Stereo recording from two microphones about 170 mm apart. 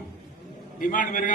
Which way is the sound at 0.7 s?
55° left (ahead or behind).